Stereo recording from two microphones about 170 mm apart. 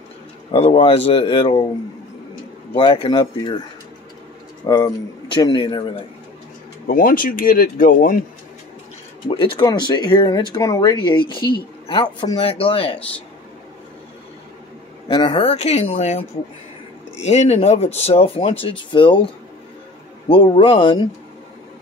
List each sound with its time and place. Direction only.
0.7 s speech: 35° left (ahead or behind)
2.7 s speech: 30° left (ahead or behind)
4.6 s speech: 20° left (ahead or behind)
6.9 s speech: 55° left (ahead or behind)
9.3 s speech: 30° left (ahead or behind)
15.0 s speech: 30° left (ahead or behind)
20.2 s speech: 30° left (ahead or behind)